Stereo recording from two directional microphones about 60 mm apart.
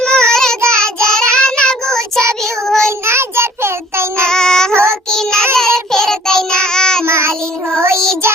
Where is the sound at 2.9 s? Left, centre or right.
Right.